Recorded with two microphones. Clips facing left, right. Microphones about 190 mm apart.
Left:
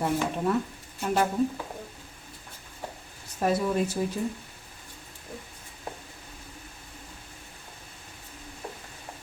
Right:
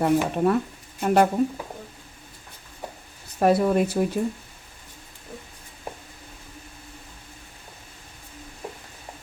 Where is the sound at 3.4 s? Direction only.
65° right (ahead or behind).